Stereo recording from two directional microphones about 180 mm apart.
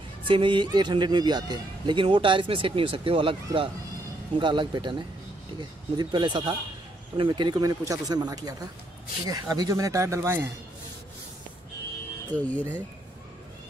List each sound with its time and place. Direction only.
0.2 s a man's voice: 25° right (ahead or behind)
12.4 s speech: 10° left (ahead or behind)